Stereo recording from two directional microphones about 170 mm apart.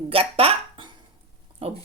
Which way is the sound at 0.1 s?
35° right (ahead or behind).